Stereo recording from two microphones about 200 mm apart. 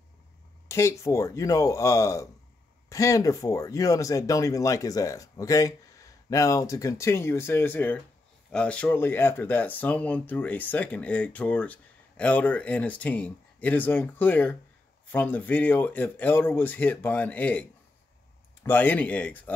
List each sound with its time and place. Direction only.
0.7 s speech: 15° left (ahead or behind)